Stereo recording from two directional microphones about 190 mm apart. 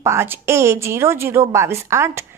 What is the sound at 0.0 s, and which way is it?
A woman's voice, 15° right (ahead or behind).